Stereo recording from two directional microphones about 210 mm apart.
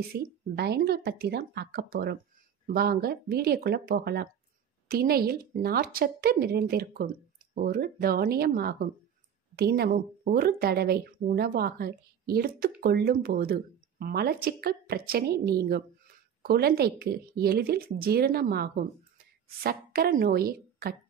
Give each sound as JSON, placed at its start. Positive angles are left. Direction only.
{"t": 0.1, "sound": "a woman's voice", "side_deg": -50}